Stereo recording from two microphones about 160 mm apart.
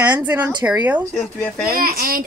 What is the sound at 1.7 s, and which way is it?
Speech, 65° right (ahead or behind).